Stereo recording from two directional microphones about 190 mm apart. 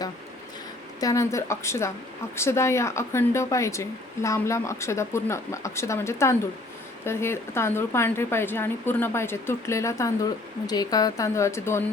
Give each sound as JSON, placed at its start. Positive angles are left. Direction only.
{"t": 0.9, "sound": "speech", "side_deg": 15}